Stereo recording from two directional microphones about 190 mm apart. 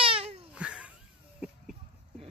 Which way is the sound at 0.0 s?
30° right (ahead or behind).